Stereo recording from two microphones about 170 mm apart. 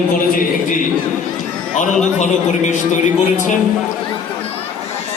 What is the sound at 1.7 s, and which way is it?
A man's voice, 45° left (ahead or behind).